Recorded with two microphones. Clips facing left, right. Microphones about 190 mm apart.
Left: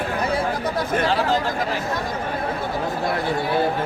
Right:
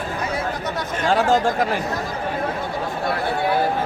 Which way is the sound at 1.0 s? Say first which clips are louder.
Right 7 dB; 45° right (ahead or behind).